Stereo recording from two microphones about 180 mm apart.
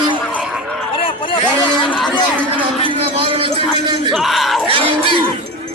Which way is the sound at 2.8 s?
30° right (ahead or behind).